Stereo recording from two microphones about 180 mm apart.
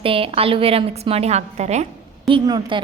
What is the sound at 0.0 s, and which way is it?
A woman's voice, 30° right (ahead or behind).